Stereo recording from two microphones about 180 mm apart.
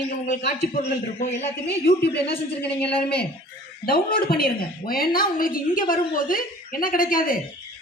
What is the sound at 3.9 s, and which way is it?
A woman's voice, 55° left (ahead or behind).